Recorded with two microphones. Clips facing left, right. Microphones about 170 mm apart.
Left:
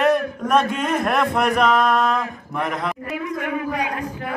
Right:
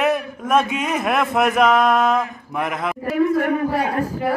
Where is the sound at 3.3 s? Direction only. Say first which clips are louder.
Right 6 dB; 35° right (ahead or behind).